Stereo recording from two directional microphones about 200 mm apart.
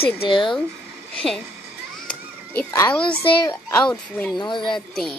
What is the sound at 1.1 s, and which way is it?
Speech, centre (ahead or behind).